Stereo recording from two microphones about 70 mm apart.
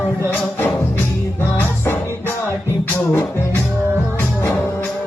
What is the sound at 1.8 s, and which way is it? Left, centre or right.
Music, left.